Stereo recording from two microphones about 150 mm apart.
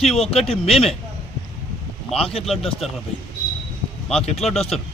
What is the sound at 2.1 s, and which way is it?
Speech, 40° left (ahead or behind).